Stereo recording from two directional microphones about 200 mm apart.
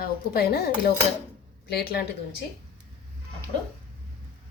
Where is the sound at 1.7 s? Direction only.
50° left (ahead or behind).